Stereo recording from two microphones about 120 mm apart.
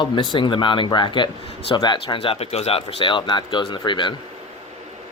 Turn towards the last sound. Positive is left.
turn(degrees=40)  # may be behind; listen again after turning